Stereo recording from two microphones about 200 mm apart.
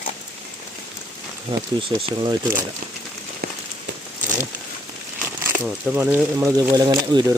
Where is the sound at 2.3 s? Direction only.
10° right (ahead or behind).